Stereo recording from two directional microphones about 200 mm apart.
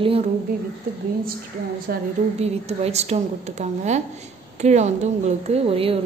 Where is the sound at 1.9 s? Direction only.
50° right (ahead or behind).